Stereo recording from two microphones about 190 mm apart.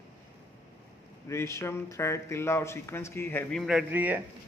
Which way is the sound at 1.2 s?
15° left (ahead or behind).